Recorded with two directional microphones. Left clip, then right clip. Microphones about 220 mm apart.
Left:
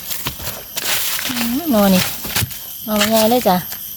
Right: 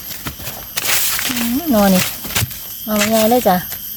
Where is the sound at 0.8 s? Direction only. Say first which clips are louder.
Right 2 dB; 10° right (ahead or behind).